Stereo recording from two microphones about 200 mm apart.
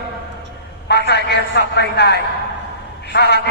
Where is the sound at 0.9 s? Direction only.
55° left (ahead or behind).